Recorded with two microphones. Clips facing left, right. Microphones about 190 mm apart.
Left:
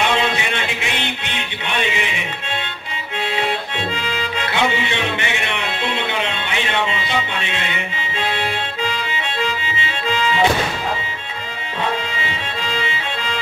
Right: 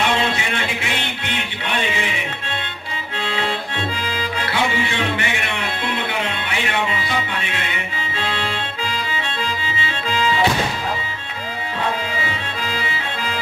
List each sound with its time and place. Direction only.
0.0 s music: 20° left (ahead or behind)
3.3 s accordion: 20° left (ahead or behind)
12.2 s music: 25° left (ahead or behind)